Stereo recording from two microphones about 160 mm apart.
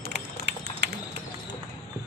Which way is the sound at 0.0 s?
90° right.